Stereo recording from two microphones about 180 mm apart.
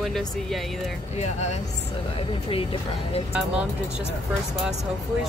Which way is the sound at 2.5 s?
30° left (ahead or behind).